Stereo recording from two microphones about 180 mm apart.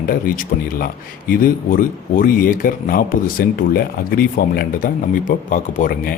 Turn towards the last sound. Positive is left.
turn(degrees=55)  # may be behind; listen again after turning